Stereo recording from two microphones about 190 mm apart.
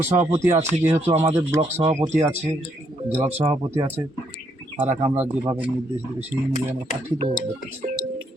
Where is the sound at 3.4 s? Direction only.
15° right (ahead or behind).